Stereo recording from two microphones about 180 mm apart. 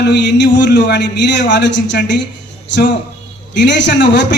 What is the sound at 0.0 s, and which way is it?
A man's voice, 75° left (ahead or behind).